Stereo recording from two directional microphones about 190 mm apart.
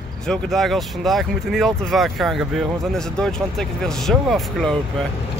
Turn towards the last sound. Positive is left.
turn(degrees=0)  # may be behind; listen again after turning